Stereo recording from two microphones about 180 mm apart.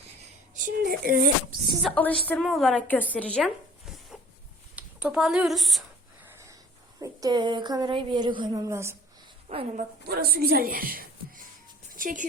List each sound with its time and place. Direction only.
0.5 s speech: 50° right (ahead or behind)
1.8 s a woman's voice: 5° left (ahead or behind)
7.0 s a woman's voice: 20° right (ahead or behind)
9.5 s a woman's voice: 35° right (ahead or behind)
10.1 s a woman's voice: 60° right (ahead or behind)
11.9 s music: 50° right (ahead or behind)